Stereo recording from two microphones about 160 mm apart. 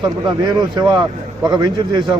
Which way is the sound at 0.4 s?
25° right (ahead or behind).